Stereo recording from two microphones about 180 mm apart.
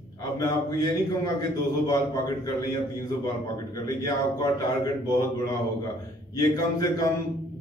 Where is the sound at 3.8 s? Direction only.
20° left (ahead or behind).